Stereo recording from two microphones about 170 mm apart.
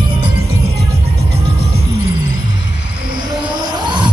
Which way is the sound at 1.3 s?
75° right (ahead or behind).